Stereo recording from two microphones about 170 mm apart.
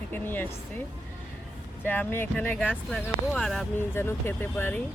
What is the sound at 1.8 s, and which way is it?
Speech, 10° left (ahead or behind).